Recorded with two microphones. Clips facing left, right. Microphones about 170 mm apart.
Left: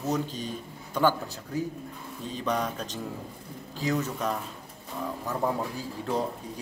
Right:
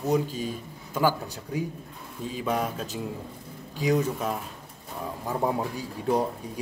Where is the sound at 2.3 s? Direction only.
10° right (ahead or behind).